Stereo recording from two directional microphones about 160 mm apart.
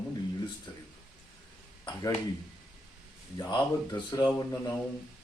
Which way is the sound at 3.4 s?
25° left (ahead or behind).